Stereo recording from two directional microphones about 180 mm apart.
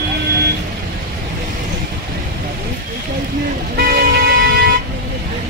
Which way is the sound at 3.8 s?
55° right (ahead or behind).